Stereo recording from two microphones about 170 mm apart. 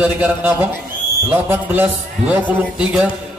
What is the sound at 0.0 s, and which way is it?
A man's voice, 10° right (ahead or behind).